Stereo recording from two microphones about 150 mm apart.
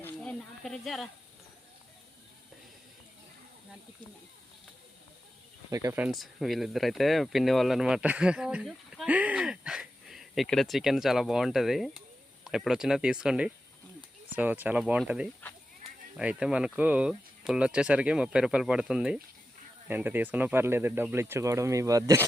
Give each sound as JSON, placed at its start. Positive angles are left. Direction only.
{"t": 0.0, "sound": "snake", "side_deg": 5}
{"t": 5.7, "sound": "speech", "side_deg": -20}
{"t": 6.0, "sound": "speech", "side_deg": 0}